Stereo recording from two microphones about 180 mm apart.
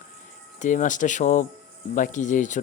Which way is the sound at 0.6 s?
45° left (ahead or behind).